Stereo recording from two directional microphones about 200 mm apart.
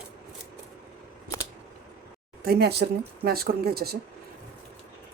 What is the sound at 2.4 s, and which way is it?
Speech, 50° right (ahead or behind).